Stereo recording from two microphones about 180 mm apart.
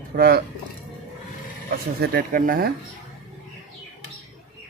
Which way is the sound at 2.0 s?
55° right (ahead or behind).